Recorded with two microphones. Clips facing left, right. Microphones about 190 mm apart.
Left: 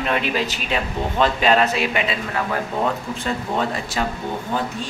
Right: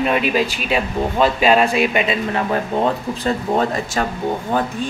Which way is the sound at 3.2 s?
45° right (ahead or behind).